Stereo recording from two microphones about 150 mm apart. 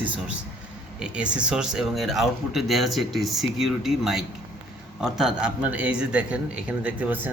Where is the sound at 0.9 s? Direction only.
5° right (ahead or behind).